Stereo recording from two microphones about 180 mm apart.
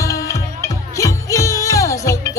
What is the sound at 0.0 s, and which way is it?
Music, 15° left (ahead or behind).